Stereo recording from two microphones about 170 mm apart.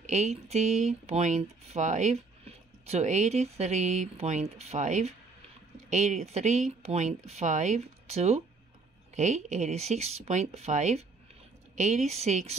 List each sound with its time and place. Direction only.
0.1 s speech: 40° right (ahead or behind)